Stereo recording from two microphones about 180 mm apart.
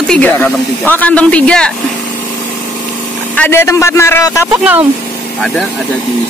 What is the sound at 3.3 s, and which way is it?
Speech, 10° left (ahead or behind).